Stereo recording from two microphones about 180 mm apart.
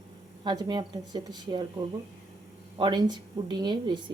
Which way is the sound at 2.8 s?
25° right (ahead or behind).